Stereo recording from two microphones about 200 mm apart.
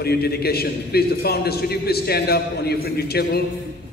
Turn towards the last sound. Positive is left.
turn(degrees=55)  # may be behind; listen again after turning